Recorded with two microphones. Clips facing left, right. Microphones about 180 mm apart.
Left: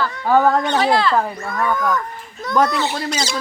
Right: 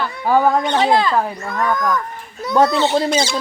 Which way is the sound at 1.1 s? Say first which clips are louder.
Even; 5° right (ahead or behind).